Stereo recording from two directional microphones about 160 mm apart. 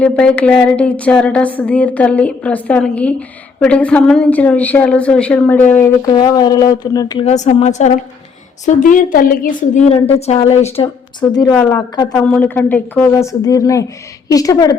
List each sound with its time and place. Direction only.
0.0 s a woman's voice: 5° left (ahead or behind)
6.1 s speech: 25° left (ahead or behind)
7.3 s a woman's voice: 45° left (ahead or behind)
9.9 s a woman's voice: 40° left (ahead or behind)
11.3 s speech: 25° left (ahead or behind)
12.1 s a woman's voice: 10° left (ahead or behind)